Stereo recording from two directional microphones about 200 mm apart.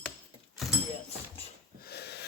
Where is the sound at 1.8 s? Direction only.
55° left (ahead or behind).